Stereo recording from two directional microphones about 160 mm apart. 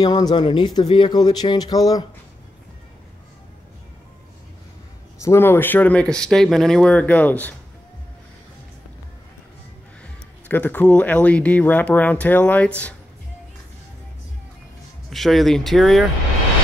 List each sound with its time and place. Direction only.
0.0 s speech: 25° left (ahead or behind)
5.2 s speech: 15° left (ahead or behind)
10.5 s speech: 10° left (ahead or behind)
15.0 s speech: centre (ahead or behind)